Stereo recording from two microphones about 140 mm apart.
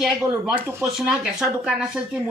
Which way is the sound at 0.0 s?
5° right (ahead or behind).